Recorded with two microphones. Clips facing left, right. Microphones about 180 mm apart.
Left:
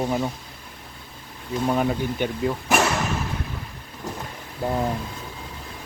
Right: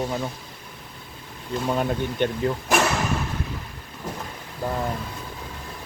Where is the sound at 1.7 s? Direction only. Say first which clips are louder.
Left 1 dB; 5° left (ahead or behind).